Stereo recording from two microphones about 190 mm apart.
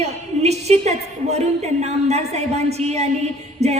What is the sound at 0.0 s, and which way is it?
A woman's voice, 35° right (ahead or behind).